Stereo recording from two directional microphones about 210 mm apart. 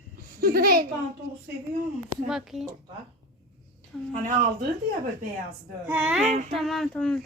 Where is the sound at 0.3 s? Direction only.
45° right (ahead or behind).